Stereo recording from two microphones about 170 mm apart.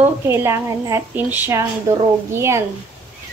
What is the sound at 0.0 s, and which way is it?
A woman's voice, 15° right (ahead or behind).